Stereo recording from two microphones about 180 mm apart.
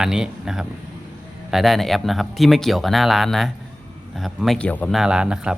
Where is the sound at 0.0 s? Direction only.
5° right (ahead or behind).